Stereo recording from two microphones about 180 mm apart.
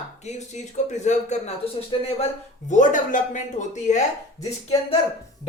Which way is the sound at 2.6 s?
45° left (ahead or behind).